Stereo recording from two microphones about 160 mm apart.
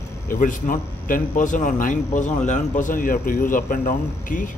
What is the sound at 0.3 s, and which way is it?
A man's voice, 55° left (ahead or behind).